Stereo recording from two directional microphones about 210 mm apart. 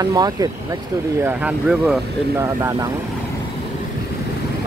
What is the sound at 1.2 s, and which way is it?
Speech, 5° right (ahead or behind).